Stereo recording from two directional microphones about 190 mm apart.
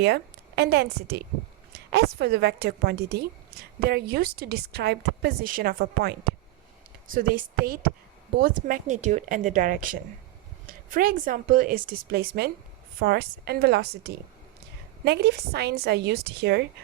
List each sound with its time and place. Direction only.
0.0 s a woman's voice: 60° right (ahead or behind)